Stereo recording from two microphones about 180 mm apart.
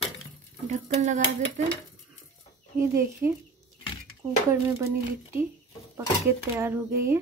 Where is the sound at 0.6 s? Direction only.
40° right (ahead or behind).